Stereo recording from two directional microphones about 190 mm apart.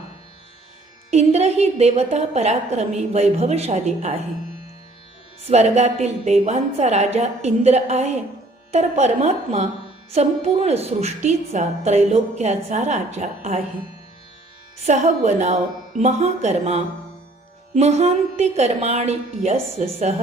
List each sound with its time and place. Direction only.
1.1 s a woman's voice: 35° right (ahead or behind)
5.5 s a woman's voice: 35° right (ahead or behind)
14.8 s a woman's voice: 35° right (ahead or behind)